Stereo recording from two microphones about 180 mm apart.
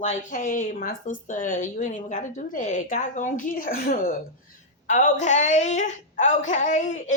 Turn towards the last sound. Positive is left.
turn(degrees=40)  # may be behind; listen again after turning